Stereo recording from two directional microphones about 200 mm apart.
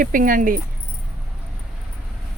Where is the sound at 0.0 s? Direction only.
45° right (ahead or behind).